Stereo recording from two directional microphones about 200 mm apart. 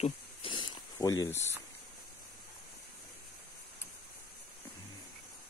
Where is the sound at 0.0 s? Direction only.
25° left (ahead or behind).